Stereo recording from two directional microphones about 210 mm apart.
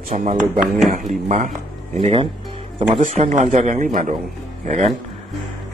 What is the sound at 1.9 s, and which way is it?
A man's voice, 25° right (ahead or behind).